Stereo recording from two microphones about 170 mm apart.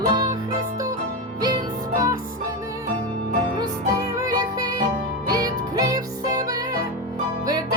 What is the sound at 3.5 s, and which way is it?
Music, 20° right (ahead or behind).